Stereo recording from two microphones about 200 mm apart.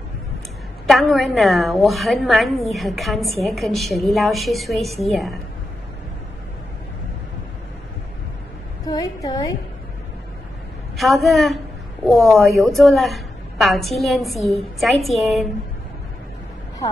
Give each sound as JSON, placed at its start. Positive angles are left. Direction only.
{"t": 0.8, "sound": "a woman's voice", "side_deg": 0}
{"t": 8.8, "sound": "a woman's voice", "side_deg": 15}
{"t": 11.0, "sound": "a woman's voice", "side_deg": 0}